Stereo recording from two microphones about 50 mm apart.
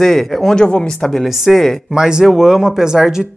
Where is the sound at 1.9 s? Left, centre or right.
Centre.